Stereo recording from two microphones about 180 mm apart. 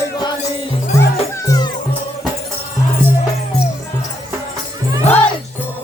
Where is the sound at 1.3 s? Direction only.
20° left (ahead or behind).